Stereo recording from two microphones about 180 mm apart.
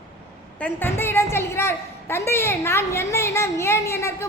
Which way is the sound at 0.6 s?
10° left (ahead or behind).